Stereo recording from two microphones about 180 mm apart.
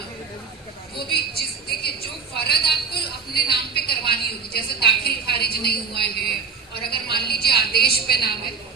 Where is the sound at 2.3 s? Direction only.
60° left (ahead or behind).